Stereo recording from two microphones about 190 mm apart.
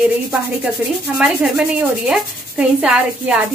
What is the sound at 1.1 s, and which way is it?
Sanding, 5° right (ahead or behind).